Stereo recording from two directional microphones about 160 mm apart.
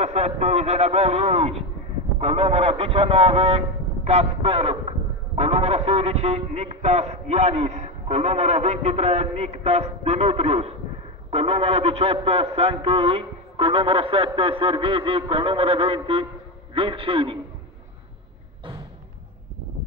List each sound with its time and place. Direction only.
0.0 s a man's voice: 45° right (ahead or behind)